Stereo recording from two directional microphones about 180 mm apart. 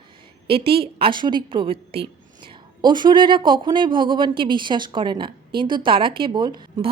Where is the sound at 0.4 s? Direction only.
30° right (ahead or behind).